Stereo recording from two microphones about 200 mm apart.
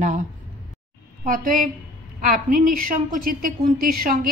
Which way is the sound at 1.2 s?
45° right (ahead or behind).